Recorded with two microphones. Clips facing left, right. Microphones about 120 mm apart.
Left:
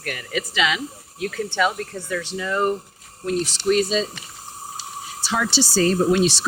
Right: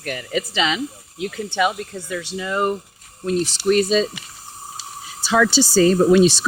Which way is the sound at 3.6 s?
55° right (ahead or behind).